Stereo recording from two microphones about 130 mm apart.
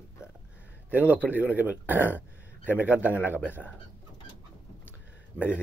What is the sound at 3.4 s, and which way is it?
Speech, 15° left (ahead or behind).